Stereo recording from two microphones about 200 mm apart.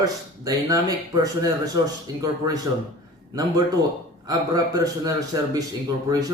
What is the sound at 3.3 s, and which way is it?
Speech, 15° right (ahead or behind).